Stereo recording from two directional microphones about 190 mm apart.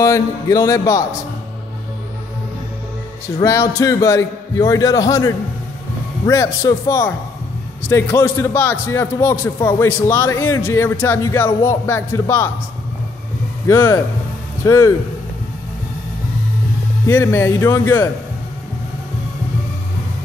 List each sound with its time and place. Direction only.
0.0 s a man's voice: 15° left (ahead or behind)
3.3 s a man's voice: 15° left (ahead or behind)
13.7 s a man's voice: 15° left (ahead or behind)
17.1 s a man's voice: 15° left (ahead or behind)